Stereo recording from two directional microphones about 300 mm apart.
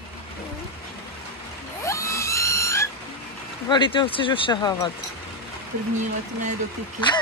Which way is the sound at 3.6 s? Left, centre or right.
Centre.